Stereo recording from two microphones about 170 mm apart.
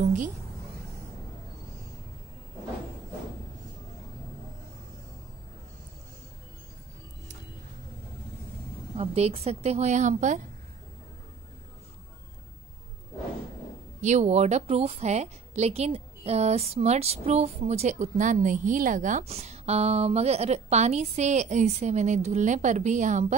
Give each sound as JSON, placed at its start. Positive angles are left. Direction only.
{"t": 0.0, "sound": "a woman's voice", "side_deg": -50}
{"t": 8.9, "sound": "a woman's voice", "side_deg": -35}
{"t": 14.0, "sound": "a woman's voice", "side_deg": -40}